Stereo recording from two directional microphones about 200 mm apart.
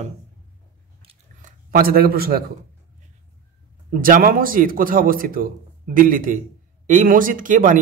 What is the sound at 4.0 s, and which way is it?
Speech, 45° right (ahead or behind).